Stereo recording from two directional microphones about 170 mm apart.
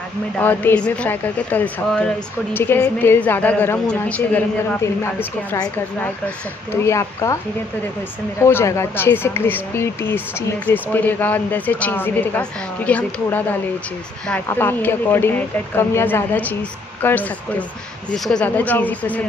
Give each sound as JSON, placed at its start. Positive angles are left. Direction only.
{"t": 0.4, "sound": "speech", "side_deg": 10}
{"t": 8.4, "sound": "speech", "side_deg": 15}